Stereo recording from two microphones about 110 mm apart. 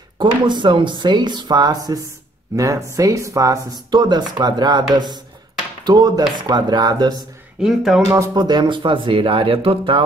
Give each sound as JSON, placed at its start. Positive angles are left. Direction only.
{"t": 0.2, "sound": "speech", "side_deg": -45}
{"t": 7.6, "sound": "speech", "side_deg": -5}
{"t": 8.4, "sound": "speech", "side_deg": -40}